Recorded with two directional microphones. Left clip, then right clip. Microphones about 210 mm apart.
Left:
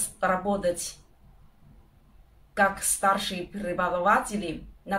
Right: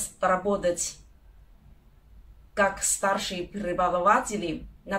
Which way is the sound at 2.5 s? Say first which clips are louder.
Even; 5° left (ahead or behind).